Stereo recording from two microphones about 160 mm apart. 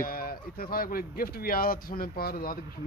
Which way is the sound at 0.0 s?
65° left (ahead or behind).